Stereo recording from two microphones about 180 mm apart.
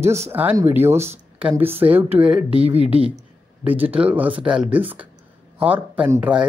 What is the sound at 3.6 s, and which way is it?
Speech, 10° right (ahead or behind).